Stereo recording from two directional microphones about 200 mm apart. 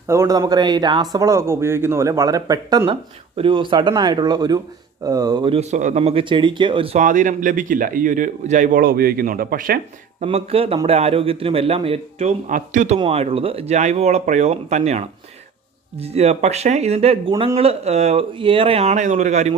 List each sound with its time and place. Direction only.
0.1 s speech: 15° right (ahead or behind); by 10.2 s 45° right (ahead or behind)
10.2 s speech: 30° right (ahead or behind)